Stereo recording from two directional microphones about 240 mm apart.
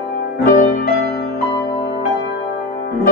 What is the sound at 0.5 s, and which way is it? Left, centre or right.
Music, left.